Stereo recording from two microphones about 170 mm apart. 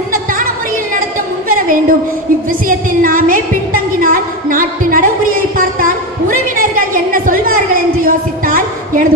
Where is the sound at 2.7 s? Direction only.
55° right (ahead or behind).